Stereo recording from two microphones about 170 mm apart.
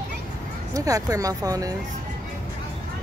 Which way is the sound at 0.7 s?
20° right (ahead or behind).